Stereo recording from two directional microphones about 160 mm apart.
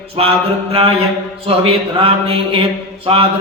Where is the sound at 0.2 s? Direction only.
35° right (ahead or behind).